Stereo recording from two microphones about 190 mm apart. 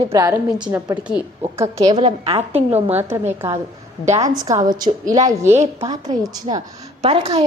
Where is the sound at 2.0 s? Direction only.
30° right (ahead or behind).